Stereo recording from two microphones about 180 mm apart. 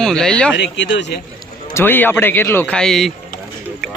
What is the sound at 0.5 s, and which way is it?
Speech, 80° left.